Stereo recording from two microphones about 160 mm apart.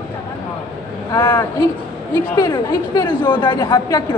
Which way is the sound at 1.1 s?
25° left (ahead or behind).